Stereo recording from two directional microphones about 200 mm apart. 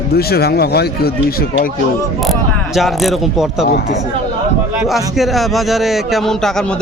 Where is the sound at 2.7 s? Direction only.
Centre (ahead or behind).